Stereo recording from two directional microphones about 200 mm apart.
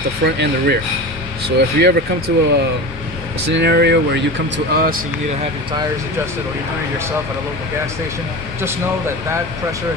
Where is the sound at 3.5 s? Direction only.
55° right (ahead or behind).